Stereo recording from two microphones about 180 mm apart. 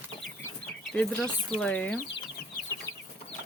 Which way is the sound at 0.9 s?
5° left (ahead or behind).